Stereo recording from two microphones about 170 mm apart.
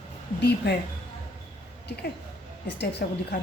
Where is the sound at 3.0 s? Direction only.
60° left (ahead or behind).